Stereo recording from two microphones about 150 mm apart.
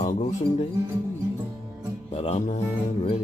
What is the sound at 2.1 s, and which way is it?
Speech, 45° left (ahead or behind).